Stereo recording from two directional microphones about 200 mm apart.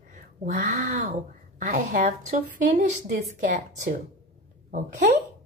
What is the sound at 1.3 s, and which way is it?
A woman's voice, 40° right (ahead or behind).